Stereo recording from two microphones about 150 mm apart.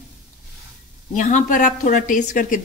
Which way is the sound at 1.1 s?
60° left (ahead or behind).